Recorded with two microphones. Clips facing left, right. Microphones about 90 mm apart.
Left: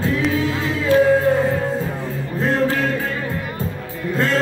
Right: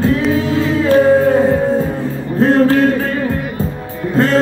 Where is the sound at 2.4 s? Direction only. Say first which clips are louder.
Right 8 dB; 45° right (ahead or behind).